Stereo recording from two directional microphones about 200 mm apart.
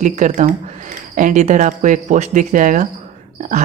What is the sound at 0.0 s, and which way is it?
Speech, 35° right (ahead or behind).